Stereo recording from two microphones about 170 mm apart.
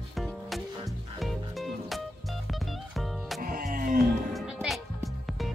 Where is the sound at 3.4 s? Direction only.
50° right (ahead or behind).